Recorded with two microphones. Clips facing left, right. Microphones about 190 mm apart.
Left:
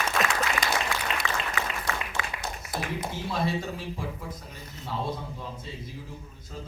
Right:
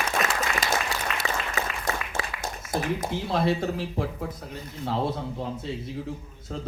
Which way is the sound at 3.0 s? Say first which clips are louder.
Right 4 dB; 60° right (ahead or behind).